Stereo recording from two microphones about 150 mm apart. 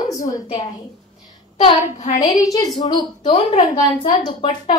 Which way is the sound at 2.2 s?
25° left (ahead or behind).